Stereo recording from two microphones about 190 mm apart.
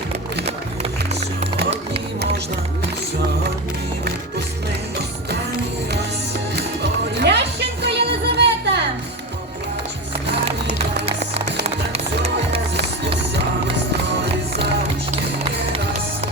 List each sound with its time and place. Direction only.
6.6 s music: 60° right (ahead or behind)
11.0 s music: 35° right (ahead or behind)